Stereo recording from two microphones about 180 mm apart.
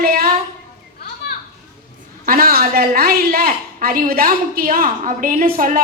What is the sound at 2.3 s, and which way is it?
A woman's voice, 55° right (ahead or behind).